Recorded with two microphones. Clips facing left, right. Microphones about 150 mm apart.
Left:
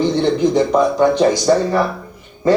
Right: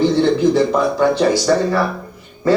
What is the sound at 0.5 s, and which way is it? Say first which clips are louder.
Speech: left 1 dB; 20° left (ahead or behind).